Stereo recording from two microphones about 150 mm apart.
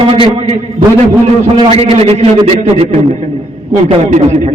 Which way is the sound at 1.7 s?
40° right (ahead or behind).